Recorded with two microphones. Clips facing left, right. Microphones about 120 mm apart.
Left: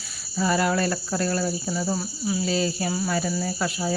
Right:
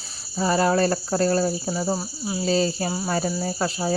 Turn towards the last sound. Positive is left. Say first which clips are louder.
# right 2 dB
turn(degrees=-35)  # may be behind; listen again after turning